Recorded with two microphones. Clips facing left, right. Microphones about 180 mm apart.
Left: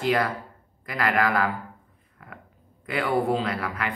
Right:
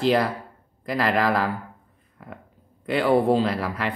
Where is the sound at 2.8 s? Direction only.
30° right (ahead or behind).